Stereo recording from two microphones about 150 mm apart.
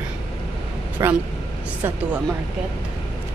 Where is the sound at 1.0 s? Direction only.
20° right (ahead or behind).